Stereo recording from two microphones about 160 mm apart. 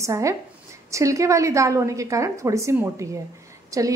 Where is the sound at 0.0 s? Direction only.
20° right (ahead or behind).